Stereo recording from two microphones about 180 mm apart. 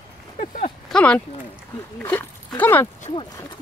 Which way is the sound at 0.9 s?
5° left (ahead or behind).